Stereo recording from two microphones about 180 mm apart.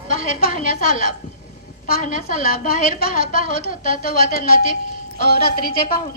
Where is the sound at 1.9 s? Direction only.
50° left (ahead or behind).